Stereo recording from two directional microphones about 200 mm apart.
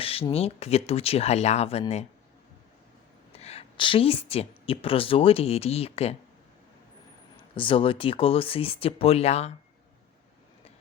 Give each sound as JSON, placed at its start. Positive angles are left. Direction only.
{"t": 0.0, "sound": "speech", "side_deg": 30}
{"t": 3.3, "sound": "a woman's voice", "side_deg": 30}
{"t": 7.5, "sound": "speech", "side_deg": 25}